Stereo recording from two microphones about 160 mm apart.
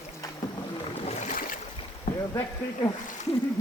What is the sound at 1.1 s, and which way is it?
Boat, 55° left (ahead or behind).